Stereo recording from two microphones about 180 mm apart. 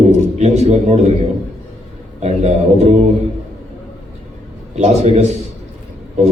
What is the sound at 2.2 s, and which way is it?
Speech, 40° right (ahead or behind).